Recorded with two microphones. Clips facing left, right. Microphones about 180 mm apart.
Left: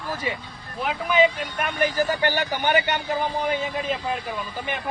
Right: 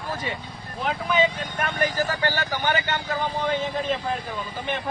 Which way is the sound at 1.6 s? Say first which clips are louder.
Left 2 dB; 15° left (ahead or behind).